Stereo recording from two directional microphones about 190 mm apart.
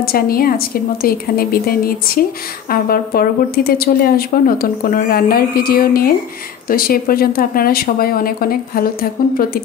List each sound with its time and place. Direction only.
0.0 s speech: 50° left (ahead or behind)